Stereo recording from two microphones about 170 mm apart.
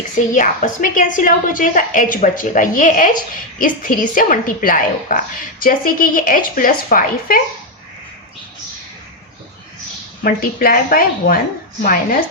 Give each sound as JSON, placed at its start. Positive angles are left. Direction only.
{"t": 0.3, "sound": "a woman's voice", "side_deg": 50}
{"t": 10.2, "sound": "a woman's voice", "side_deg": 60}